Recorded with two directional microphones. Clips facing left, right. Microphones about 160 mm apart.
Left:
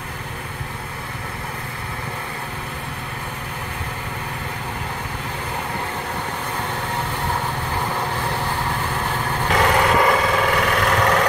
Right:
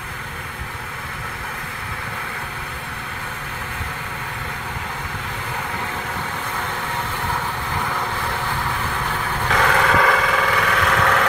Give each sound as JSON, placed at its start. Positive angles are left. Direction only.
{"t": 9.5, "sound": "vehicle", "side_deg": 15}